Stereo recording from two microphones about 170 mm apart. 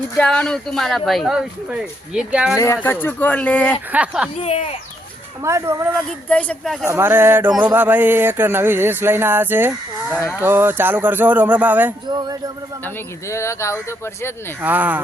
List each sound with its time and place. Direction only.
0.2 s speech: 5° left (ahead or behind)
2.7 s speech: 10° left (ahead or behind)
3.9 s speech: 5° right (ahead or behind)
4.4 s speech: 40° left (ahead or behind)
5.4 s speech: 15° right (ahead or behind)
6.2 s speech: 5° left (ahead or behind)
6.8 s speech: 15° right (ahead or behind)
12.0 s speech: 25° right (ahead or behind)
12.8 s speech: 15° left (ahead or behind)
14.6 s speech: 10° right (ahead or behind)